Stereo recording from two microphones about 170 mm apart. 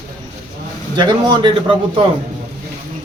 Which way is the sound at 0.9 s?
25° right (ahead or behind).